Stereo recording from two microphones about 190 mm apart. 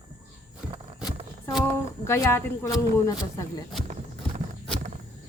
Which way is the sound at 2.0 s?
15° left (ahead or behind).